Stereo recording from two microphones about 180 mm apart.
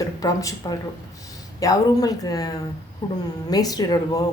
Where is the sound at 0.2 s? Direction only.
20° left (ahead or behind).